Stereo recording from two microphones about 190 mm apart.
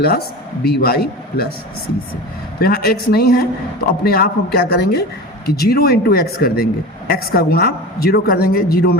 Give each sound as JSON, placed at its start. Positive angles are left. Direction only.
{"t": 0.0, "sound": "speech", "side_deg": 55}
{"t": 2.6, "sound": "a woman's voice", "side_deg": 55}